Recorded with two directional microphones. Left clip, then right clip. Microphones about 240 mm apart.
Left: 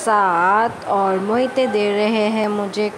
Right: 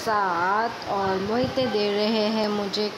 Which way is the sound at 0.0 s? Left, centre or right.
Left.